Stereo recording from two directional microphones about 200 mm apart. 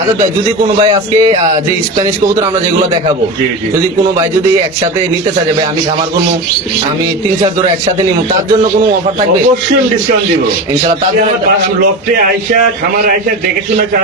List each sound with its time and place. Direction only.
0.8 s speech: 25° right (ahead or behind)